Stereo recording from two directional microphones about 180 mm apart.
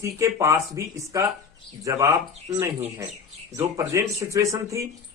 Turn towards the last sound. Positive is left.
turn(degrees=-15)  # may be behind; listen again after turning